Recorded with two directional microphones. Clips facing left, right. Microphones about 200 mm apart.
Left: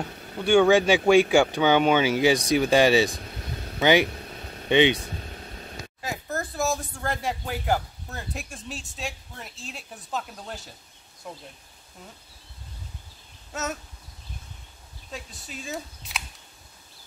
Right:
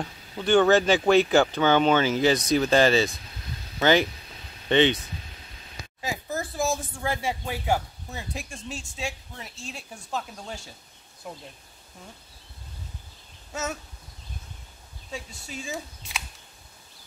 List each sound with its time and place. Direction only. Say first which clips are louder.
0.4 s speech: left 1 dB; 10° left (ahead or behind)
4.0 s vehicle: left 3 dB; 55° left (ahead or behind)
4.6 s speech: left 1 dB; 15° left (ahead or behind)
5.0 s vehicle: left 5 dB; 50° left (ahead or behind)
5.9 s speech: right 1 dB; centre (ahead or behind)
13.5 s a sound: even; centre (ahead or behind)
15.0 s speech: right 2 dB; centre (ahead or behind)